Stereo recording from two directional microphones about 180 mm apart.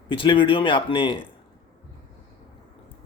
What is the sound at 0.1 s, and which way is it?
Speech, 30° left (ahead or behind).